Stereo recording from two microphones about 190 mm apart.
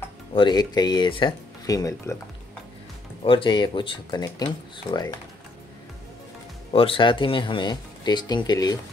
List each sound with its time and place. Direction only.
0.3 s speech: 25° left (ahead or behind)
3.3 s speech: 25° left (ahead or behind)
6.7 s speech: 30° left (ahead or behind)